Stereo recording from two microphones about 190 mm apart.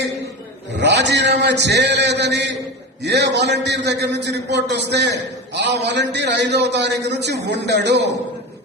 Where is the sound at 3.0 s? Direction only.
65° right (ahead or behind).